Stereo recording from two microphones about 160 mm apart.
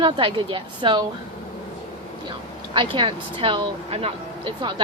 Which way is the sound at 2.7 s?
30° right (ahead or behind).